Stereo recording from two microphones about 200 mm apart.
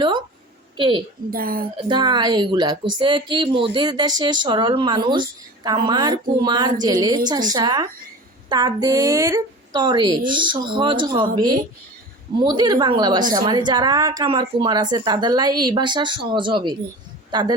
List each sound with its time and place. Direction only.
0.8 s a woman's voice: 25° right (ahead or behind)
1.3 s a woman's voice: 45° right (ahead or behind)
1.9 s a woman's voice: 20° right (ahead or behind)